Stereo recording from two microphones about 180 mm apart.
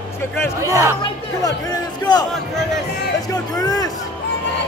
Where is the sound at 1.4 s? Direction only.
20° left (ahead or behind).